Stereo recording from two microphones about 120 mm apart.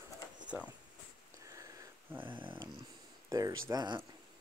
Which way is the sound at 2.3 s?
45° right (ahead or behind).